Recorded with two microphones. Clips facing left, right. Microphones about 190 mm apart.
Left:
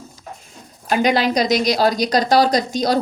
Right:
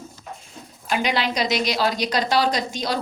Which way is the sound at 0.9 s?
45° left (ahead or behind).